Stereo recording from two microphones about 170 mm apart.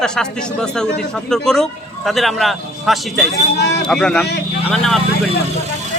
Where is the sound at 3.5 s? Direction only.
80° left.